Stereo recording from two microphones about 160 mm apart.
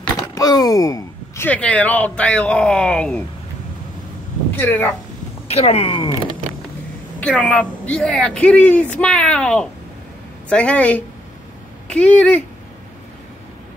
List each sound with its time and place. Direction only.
0.3 s speech: 25° left (ahead or behind); by 3.3 s 5° left (ahead or behind)
4.6 s speech: 10° left (ahead or behind)
5.5 s speech: 40° left (ahead or behind)
7.2 s speech: 10° left (ahead or behind)